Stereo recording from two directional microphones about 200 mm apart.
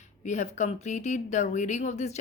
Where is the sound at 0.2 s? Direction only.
35° left (ahead or behind).